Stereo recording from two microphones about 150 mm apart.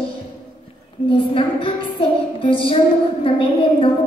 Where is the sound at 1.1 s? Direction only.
35° left (ahead or behind).